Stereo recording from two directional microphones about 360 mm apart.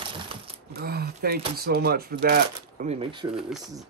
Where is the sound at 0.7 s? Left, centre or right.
Right.